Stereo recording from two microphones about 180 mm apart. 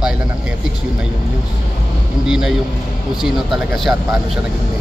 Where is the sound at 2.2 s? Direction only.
5° right (ahead or behind).